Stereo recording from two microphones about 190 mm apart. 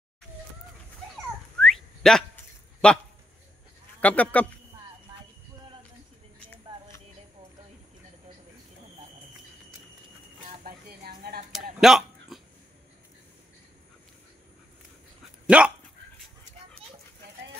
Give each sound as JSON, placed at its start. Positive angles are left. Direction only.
{"t": 1.6, "sound": "whistling", "side_deg": 0}
{"t": 4.0, "sound": "speech", "side_deg": 5}
{"t": 10.6, "sound": "a sound", "side_deg": -50}
{"t": 11.8, "sound": "hiccup", "side_deg": 0}
{"t": 15.4, "sound": "dog", "side_deg": -5}